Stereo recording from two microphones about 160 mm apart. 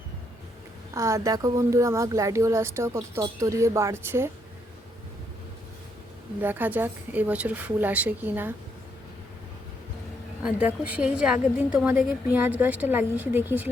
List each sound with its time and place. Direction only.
0.9 s speech: 20° right (ahead or behind)
6.4 s a woman's voice: 10° right (ahead or behind)
10.4 s a woman's voice: 10° right (ahead or behind)